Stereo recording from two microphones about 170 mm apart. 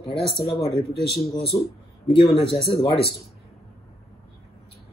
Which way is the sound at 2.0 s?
35° left (ahead or behind).